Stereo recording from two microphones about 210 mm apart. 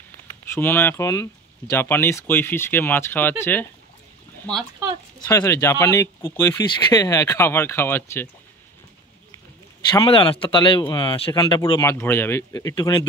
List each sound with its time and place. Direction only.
0.5 s speech: 10° left (ahead or behind)
5.3 s speech: 15° left (ahead or behind)
9.9 s speech: 25° left (ahead or behind)
11.8 s speech: 10° left (ahead or behind)